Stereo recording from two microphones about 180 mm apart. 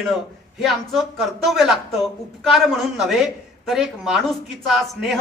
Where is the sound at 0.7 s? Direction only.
Centre (ahead or behind).